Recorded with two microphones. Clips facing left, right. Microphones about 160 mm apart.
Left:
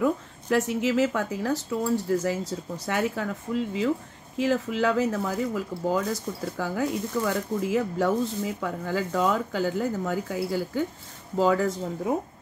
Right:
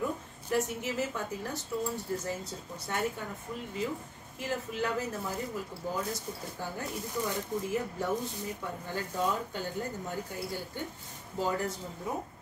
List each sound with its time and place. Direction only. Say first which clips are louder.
0.0 s speech: left 9 dB; 90° left